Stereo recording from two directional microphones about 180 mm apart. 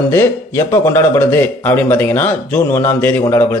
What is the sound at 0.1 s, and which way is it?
A man's voice, 10° left (ahead or behind).